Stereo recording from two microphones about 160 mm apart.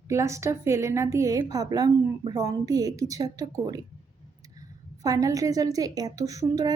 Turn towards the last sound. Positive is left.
turn(degrees=-20)  # may be behind; listen again after turning